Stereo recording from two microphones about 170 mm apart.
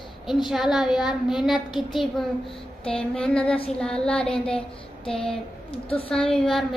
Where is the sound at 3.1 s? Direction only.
5° left (ahead or behind).